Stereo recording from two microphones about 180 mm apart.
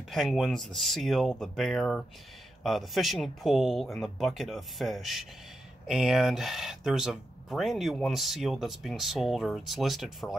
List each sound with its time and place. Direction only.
0.1 s speech: centre (ahead or behind)